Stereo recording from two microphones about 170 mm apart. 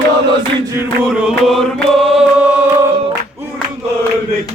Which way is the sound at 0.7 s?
10° right (ahead or behind).